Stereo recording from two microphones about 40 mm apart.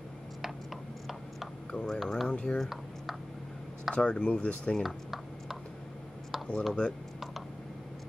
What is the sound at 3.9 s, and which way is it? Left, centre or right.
Speech, left.